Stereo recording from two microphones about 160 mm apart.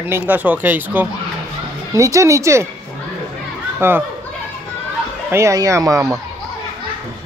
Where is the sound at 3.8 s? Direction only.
15° right (ahead or behind).